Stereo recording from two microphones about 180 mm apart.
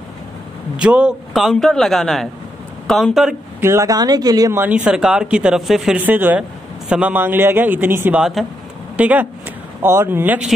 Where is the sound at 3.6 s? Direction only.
20° right (ahead or behind).